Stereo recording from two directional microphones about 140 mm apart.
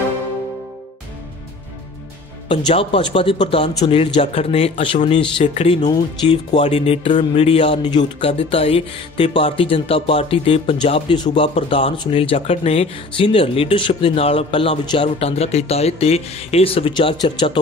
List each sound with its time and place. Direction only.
2.4 s speech: 40° left (ahead or behind)
5.9 s speech: 35° left (ahead or behind)